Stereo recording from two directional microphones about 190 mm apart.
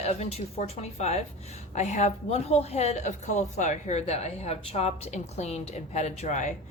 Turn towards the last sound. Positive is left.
turn(degrees=40)  # may be behind; listen again after turning